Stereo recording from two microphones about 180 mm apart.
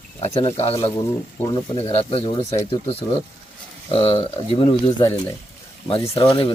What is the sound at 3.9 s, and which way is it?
Speech, 30° left (ahead or behind).